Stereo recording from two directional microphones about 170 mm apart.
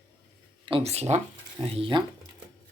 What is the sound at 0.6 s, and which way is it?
Speech, 35° right (ahead or behind).